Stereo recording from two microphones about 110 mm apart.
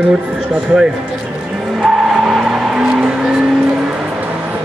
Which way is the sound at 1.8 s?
Centre (ahead or behind).